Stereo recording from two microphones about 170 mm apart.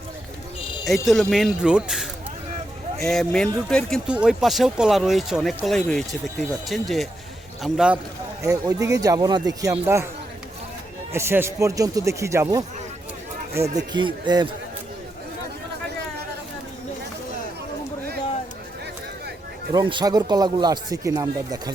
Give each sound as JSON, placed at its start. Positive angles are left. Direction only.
{"t": 0.9, "sound": "speech", "side_deg": 0}
{"t": 8.4, "sound": "speech", "side_deg": -20}
{"t": 11.1, "sound": "a man's voice", "side_deg": -15}
{"t": 13.9, "sound": "speech", "side_deg": -25}
{"t": 19.7, "sound": "speech", "side_deg": -25}